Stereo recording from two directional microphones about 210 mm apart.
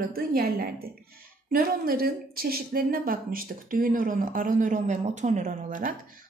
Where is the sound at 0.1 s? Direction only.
45° right (ahead or behind).